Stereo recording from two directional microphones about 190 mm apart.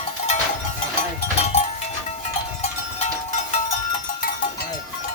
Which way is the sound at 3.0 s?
35° left (ahead or behind).